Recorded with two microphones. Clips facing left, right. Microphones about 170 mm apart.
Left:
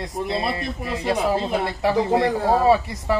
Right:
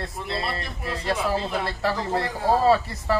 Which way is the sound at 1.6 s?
15° left (ahead or behind).